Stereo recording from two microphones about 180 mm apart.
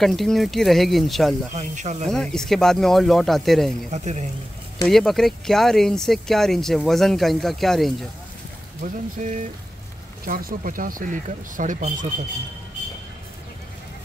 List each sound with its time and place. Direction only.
0.0 s speech: centre (ahead or behind)
1.5 s speech: 40° right (ahead or behind)
2.0 s speech: 5° left (ahead or behind)
3.9 s speech: 40° right (ahead or behind)
4.8 s speech: centre (ahead or behind)
8.8 s speech: 45° right (ahead or behind)